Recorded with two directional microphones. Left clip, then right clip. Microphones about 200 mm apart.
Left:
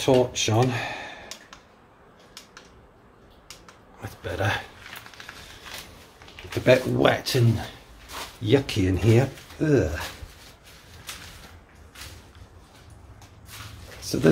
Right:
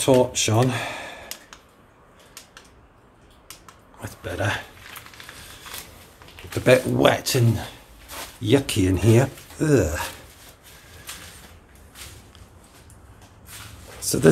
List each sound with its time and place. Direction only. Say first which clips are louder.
0.0 s speech: right 2 dB; 20° right (ahead or behind)
4.0 s a sound: right 1 dB; 5° right (ahead or behind)
6.6 s speech: right 2 dB; 15° right (ahead or behind)
14.0 s speech: right 4 dB; 20° right (ahead or behind)